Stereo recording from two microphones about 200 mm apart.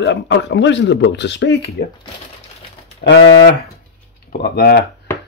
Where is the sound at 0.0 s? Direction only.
65° left (ahead or behind).